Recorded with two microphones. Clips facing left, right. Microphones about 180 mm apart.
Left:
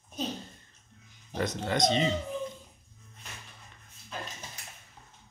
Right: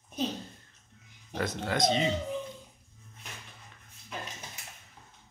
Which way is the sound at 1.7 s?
5° right (ahead or behind).